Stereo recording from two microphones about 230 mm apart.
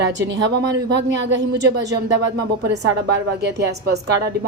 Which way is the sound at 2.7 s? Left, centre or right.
Right.